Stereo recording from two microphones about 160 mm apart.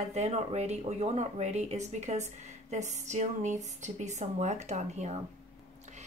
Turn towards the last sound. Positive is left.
turn(degrees=-45)  # may be behind; listen again after turning